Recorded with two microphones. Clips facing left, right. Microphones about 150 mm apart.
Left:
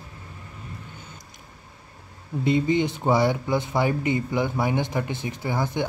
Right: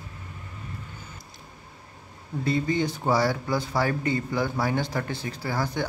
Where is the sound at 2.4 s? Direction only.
20° left (ahead or behind).